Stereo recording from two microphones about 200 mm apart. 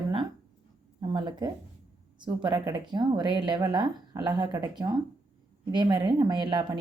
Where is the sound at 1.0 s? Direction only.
20° right (ahead or behind).